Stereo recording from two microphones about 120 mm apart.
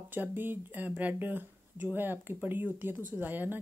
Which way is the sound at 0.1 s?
15° right (ahead or behind).